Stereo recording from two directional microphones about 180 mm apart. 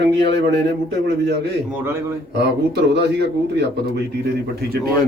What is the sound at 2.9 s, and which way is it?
Speech, 70° right (ahead or behind).